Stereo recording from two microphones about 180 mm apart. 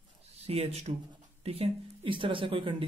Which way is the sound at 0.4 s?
35° right (ahead or behind).